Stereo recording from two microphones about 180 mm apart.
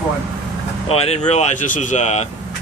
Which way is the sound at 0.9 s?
35° left (ahead or behind).